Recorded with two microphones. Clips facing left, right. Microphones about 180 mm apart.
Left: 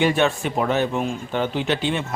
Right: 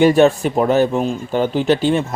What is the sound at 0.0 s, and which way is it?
Speech, 40° right (ahead or behind).